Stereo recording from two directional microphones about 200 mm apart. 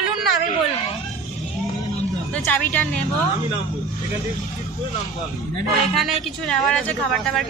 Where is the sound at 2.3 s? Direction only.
10° left (ahead or behind).